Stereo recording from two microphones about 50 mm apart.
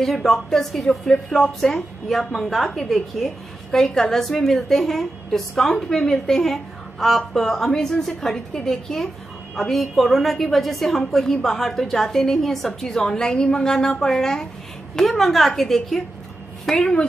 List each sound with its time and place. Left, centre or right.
0.0 s a woman's voice: centre
16.7 s speech: centre